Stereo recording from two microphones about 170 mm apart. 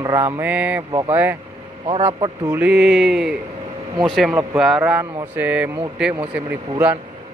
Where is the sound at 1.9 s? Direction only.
35° right (ahead or behind).